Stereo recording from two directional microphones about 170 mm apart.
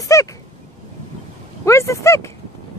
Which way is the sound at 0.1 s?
20° left (ahead or behind).